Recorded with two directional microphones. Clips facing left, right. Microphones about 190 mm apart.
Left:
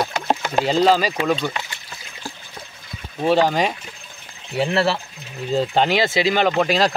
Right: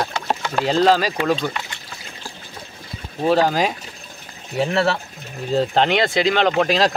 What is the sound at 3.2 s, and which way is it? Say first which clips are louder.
Speech: even; centre (ahead or behind).